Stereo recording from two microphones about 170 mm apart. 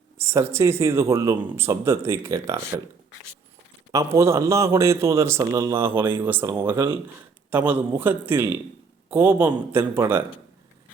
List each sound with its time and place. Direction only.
0.2 s speech: 15° right (ahead or behind)
3.9 s speech: 15° right (ahead or behind)
7.5 s speech: 10° right (ahead or behind)